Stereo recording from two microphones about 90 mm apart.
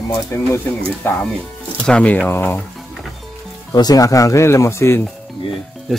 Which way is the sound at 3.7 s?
45° left (ahead or behind).